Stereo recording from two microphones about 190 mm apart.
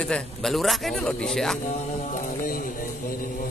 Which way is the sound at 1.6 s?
45° left (ahead or behind).